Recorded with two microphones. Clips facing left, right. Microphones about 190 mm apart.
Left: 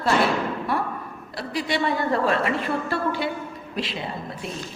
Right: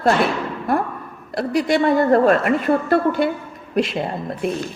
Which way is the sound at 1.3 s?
50° right (ahead or behind).